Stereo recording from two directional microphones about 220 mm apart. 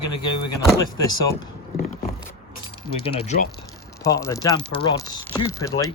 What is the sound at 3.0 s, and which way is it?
Speech, 25° left (ahead or behind).